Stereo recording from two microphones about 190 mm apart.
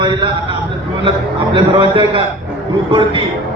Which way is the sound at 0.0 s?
25° right (ahead or behind).